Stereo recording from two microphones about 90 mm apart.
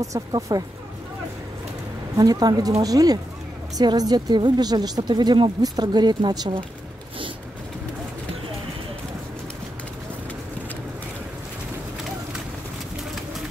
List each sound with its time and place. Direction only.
0.0 s speech: 40° right (ahead or behind)
2.1 s a woman's voice: 45° right (ahead or behind)